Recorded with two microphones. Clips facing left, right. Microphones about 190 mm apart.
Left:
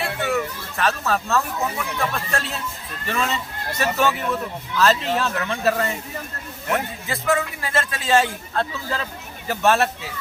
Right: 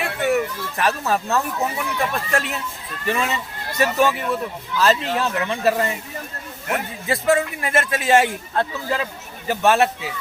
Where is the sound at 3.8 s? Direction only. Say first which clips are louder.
Right 3 dB; 10° right (ahead or behind).